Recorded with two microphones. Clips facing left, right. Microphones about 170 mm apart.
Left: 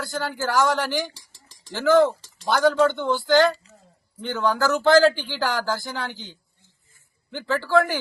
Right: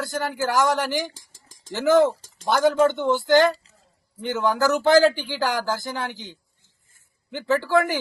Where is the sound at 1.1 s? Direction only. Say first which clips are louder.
Right 1 dB; 45° right (ahead or behind).